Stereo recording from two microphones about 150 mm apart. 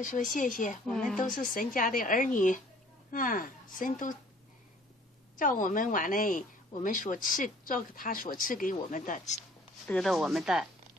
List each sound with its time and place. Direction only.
0.0 s a woman's voice: 60° left (ahead or behind)
0.8 s speech: 5° left (ahead or behind)
1.3 s a woman's voice: 65° left (ahead or behind)
5.4 s a woman's voice: 60° left (ahead or behind)
9.8 s speech: centre (ahead or behind)